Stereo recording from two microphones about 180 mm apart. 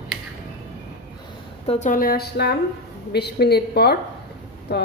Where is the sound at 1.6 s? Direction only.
40° left (ahead or behind).